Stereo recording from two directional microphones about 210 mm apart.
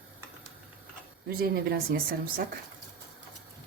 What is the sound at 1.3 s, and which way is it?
Speech, 45° right (ahead or behind).